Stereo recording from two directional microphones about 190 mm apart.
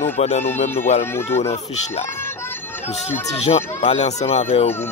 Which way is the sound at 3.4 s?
35° left (ahead or behind).